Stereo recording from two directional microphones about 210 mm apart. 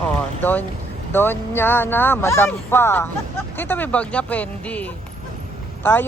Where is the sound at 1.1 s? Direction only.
10° left (ahead or behind).